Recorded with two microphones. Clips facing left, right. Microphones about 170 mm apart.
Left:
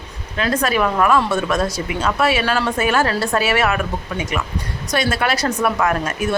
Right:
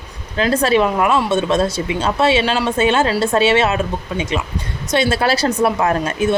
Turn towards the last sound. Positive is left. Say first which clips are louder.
# right 3 dB
turn(degrees=-25)  # may be behind; listen again after turning